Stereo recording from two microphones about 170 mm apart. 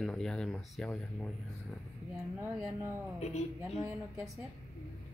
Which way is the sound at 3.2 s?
40° left (ahead or behind).